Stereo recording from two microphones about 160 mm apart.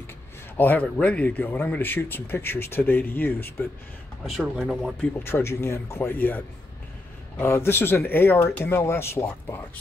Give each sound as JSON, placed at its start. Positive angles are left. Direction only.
{"t": 0.6, "sound": "speech", "side_deg": 10}
{"t": 4.3, "sound": "speech", "side_deg": 0}
{"t": 5.2, "sound": "speech", "side_deg": 15}